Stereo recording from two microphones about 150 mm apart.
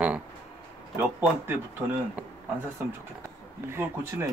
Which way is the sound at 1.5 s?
15° right (ahead or behind).